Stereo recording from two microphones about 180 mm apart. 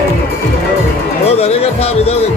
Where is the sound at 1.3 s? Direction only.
35° left (ahead or behind).